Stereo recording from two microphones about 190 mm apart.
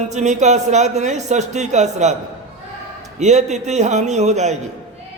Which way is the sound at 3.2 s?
35° right (ahead or behind).